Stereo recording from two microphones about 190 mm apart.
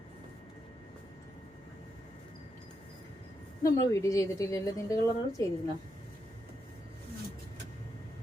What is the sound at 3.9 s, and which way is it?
A woman's voice, 15° left (ahead or behind).